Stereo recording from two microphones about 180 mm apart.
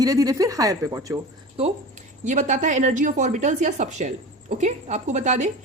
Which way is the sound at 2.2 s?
40° right (ahead or behind).